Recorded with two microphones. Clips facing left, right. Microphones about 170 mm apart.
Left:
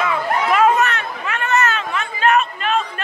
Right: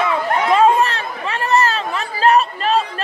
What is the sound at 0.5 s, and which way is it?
Chatter, 30° right (ahead or behind).